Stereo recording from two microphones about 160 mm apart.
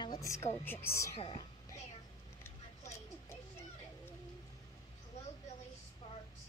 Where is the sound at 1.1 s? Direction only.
30° left (ahead or behind).